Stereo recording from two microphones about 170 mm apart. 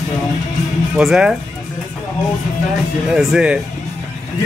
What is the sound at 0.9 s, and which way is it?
Speech, 5° right (ahead or behind).